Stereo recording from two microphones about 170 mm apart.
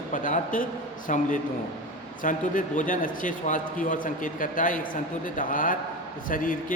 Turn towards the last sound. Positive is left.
turn(degrees=55)  # may be behind; listen again after turning